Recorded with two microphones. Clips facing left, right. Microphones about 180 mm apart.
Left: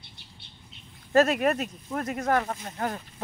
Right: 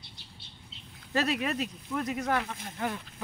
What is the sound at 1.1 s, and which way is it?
Speech, 50° left (ahead or behind).